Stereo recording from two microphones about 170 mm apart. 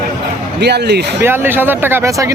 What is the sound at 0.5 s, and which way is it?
Speech, 80° right.